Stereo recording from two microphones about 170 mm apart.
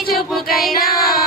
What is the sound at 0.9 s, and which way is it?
Child singing, 60° left (ahead or behind).